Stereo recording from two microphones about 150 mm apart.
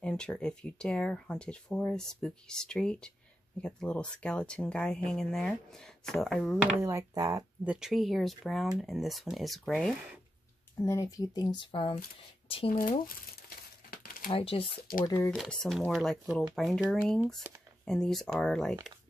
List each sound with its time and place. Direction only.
0.0 s speech: 5° left (ahead or behind)
6.8 s speech: 20° right (ahead or behind)
7.6 s speech: 5° right (ahead or behind)
10.8 s speech: 20° left (ahead or behind); by 12.7 s 40° left (ahead or behind)
12.7 s speech: 65° left (ahead or behind)
13.8 s crumpling: 70° left (ahead or behind)
14.3 s speech: 40° left (ahead or behind)
15.0 s speech: 20° left (ahead or behind)
15.3 s speech: 5° left (ahead or behind)
17.4 s speech: 15° right (ahead or behind)
17.8 s speech: 5° left (ahead or behind)